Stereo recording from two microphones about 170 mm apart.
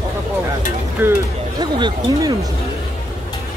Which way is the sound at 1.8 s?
20° right (ahead or behind).